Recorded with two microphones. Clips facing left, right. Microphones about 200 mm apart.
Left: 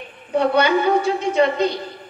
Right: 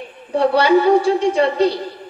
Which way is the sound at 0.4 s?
35° right (ahead or behind).